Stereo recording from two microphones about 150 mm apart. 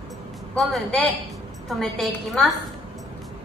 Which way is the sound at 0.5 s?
Centre (ahead or behind).